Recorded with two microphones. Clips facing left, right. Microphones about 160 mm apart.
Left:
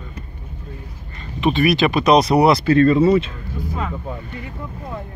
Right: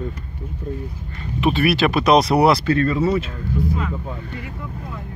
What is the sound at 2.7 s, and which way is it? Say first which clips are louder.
Speech: left 5 dB; 25° left (ahead or behind).